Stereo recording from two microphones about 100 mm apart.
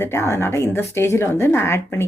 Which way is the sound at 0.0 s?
30° left (ahead or behind).